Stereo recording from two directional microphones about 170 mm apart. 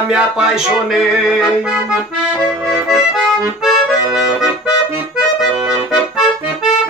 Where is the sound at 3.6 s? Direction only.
5° right (ahead or behind).